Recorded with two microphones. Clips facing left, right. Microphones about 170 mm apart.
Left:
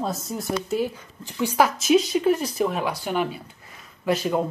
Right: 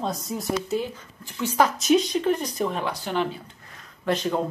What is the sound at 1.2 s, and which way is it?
Speech, 10° left (ahead or behind).